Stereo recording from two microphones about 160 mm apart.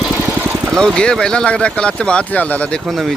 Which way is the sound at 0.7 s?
5° left (ahead or behind).